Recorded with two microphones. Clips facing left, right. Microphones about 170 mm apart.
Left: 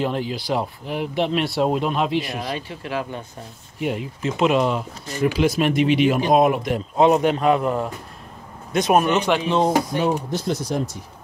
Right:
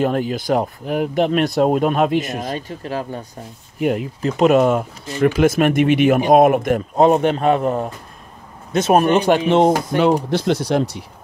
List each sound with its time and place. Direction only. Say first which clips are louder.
0.0 s speech: right 5 dB; 50° right (ahead or behind)
8.9 s speech: right 4 dB; 35° right (ahead or behind)
9.5 s speech: right 5 dB; 70° right (ahead or behind)